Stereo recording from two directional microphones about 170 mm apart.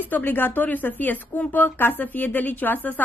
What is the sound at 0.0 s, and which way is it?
A woman's voice, 10° left (ahead or behind).